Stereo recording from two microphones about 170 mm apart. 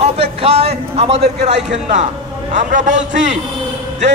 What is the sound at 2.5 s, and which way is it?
Speech, 45° right (ahead or behind).